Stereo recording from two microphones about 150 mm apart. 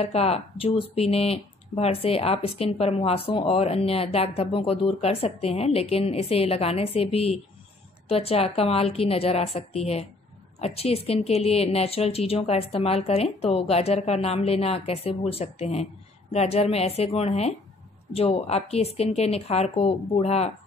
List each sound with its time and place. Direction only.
0.0 s a woman's voice: 45° left (ahead or behind)